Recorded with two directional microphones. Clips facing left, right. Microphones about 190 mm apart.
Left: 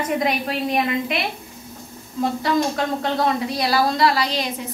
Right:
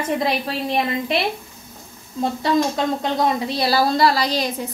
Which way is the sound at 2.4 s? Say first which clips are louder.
Right 3 dB; 20° right (ahead or behind).